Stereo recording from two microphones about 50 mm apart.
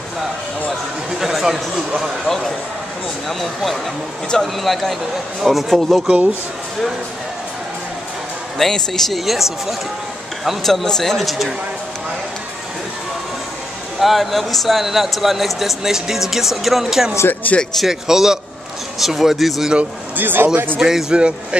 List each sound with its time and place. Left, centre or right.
1.1 s speech: centre
8.5 s speech: centre
13.9 s speech: centre
17.3 s speech: left
17.8 s speech: centre
20.2 s a man's voice: right
20.8 s speech: centre